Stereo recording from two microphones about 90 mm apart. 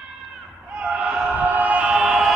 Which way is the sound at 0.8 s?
10° right (ahead or behind).